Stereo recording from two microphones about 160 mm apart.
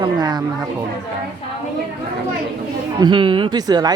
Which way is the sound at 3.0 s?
30° right (ahead or behind).